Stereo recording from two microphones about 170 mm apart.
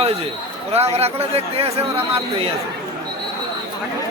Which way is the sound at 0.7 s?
35° right (ahead or behind).